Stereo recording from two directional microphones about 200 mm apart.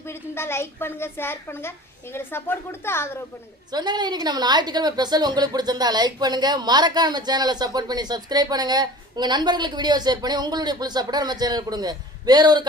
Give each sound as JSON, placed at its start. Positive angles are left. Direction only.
{"t": 0.0, "sound": "a woman's voice", "side_deg": 10}
{"t": 3.7, "sound": "a woman's voice", "side_deg": -20}